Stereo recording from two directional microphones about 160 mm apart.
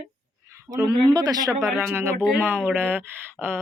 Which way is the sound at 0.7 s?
25° right (ahead or behind).